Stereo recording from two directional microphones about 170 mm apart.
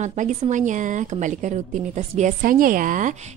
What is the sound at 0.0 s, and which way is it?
A woman's voice, 45° right (ahead or behind).